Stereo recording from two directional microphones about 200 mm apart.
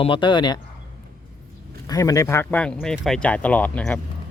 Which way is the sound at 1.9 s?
15° left (ahead or behind).